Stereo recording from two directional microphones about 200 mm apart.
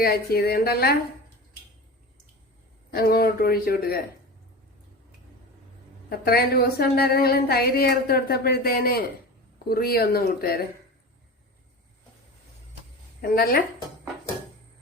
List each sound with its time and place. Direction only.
0.0 s a woman's voice: 50° left (ahead or behind)
2.9 s a woman's voice: 50° left (ahead or behind)
6.1 s a woman's voice: 50° left (ahead or behind)
13.3 s a woman's voice: 50° left (ahead or behind)